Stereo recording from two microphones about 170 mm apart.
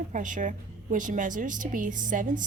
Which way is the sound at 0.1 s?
50° right (ahead or behind).